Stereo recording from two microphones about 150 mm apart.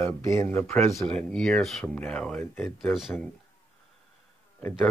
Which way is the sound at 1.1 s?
5° left (ahead or behind).